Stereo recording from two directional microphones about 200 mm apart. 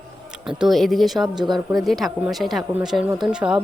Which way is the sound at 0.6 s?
Centre (ahead or behind).